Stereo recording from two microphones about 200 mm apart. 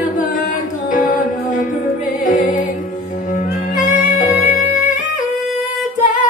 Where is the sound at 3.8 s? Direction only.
40° left (ahead or behind).